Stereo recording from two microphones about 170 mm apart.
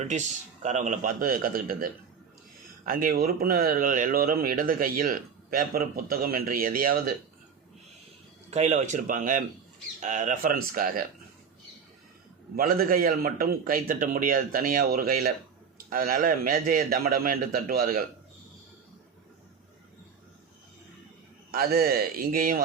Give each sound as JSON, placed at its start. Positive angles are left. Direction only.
{"t": 0.0, "sound": "speech", "side_deg": -45}
{"t": 8.4, "sound": "speech", "side_deg": -40}
{"t": 12.5, "sound": "speech", "side_deg": -60}
{"t": 21.5, "sound": "speech", "side_deg": -65}